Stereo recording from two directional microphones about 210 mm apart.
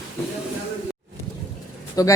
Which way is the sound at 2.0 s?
15° left (ahead or behind).